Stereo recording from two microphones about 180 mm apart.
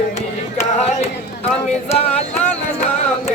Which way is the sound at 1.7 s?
35° left (ahead or behind).